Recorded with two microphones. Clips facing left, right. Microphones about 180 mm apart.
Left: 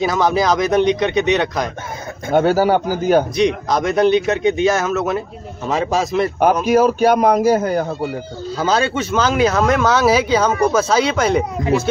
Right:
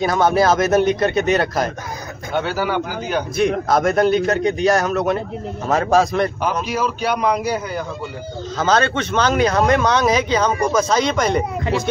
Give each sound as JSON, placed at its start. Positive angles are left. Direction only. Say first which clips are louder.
{"t": 0.0, "sound": "speech", "louder": "right 1 dB", "side_deg": 0}
{"t": 2.3, "sound": "a man's voice", "louder": "left 7 dB", "side_deg": 45}
{"t": 3.3, "sound": "speech", "louder": "even", "side_deg": 0}
{"t": 6.4, "sound": "a man's voice", "louder": "left 8 dB", "side_deg": 50}
{"t": 8.5, "sound": "speech", "louder": "even", "side_deg": 10}